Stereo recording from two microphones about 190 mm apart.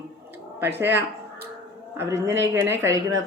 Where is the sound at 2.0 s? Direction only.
15° right (ahead or behind).